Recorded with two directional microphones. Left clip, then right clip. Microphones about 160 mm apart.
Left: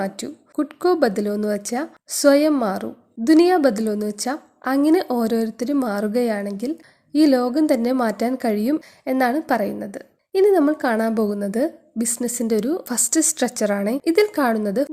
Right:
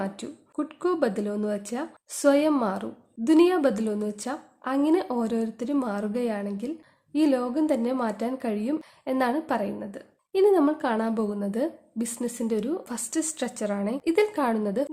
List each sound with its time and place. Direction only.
0.0 s speech: 25° left (ahead or behind)